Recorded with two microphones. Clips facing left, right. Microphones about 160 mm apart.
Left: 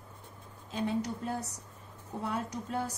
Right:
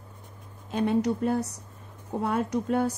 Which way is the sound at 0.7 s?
65° right (ahead or behind).